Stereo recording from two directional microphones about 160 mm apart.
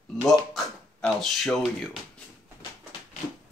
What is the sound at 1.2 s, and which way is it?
Speech, centre (ahead or behind).